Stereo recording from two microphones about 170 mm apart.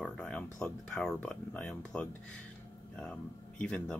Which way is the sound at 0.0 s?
5° left (ahead or behind).